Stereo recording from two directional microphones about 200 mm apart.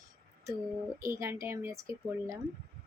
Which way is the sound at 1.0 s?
15° right (ahead or behind).